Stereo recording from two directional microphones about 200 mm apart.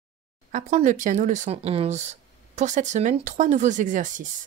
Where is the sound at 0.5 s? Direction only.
35° right (ahead or behind).